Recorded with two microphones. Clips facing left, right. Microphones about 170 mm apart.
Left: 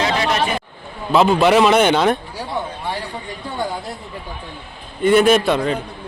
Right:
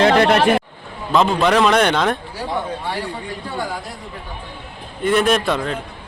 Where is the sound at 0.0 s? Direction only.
60° right (ahead or behind).